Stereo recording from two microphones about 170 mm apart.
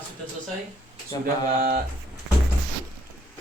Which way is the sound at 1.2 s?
55° right (ahead or behind).